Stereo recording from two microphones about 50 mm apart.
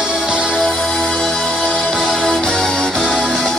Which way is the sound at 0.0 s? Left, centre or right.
Centre.